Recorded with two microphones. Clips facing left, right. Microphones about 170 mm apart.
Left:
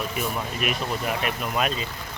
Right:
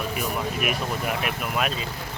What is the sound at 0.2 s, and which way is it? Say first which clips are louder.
Speech: even; 5° right (ahead or behind).